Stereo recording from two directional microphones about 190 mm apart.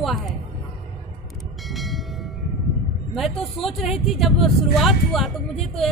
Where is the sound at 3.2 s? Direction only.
Centre (ahead or behind).